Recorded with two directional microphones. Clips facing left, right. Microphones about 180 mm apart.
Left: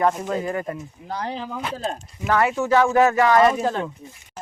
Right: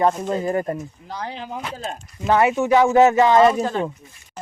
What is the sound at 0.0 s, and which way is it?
Speech, 25° right (ahead or behind).